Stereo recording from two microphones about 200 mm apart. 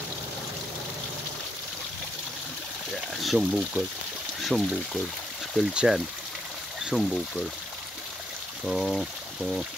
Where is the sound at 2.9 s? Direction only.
Centre (ahead or behind).